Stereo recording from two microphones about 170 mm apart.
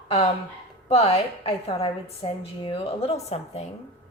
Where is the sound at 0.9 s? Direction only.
35° left (ahead or behind).